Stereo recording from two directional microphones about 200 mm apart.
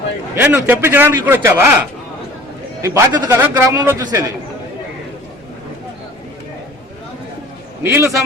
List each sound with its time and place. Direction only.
0.3 s a man's voice: 10° right (ahead or behind)
2.8 s a man's voice: 20° right (ahead or behind)
7.8 s a man's voice: 10° right (ahead or behind)